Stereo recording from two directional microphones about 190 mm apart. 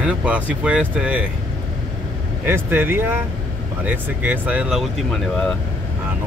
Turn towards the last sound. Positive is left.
turn(degrees=0)  # may be behind; listen again after turning